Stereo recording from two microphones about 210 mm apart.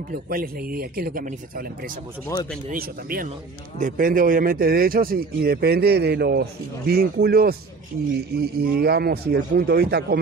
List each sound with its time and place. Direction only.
0.1 s speech: 45° right (ahead or behind)
2.3 s a man's voice: 15° left (ahead or behind)
2.7 s speech: 45° right (ahead or behind)
8.7 s speech: 50° right (ahead or behind)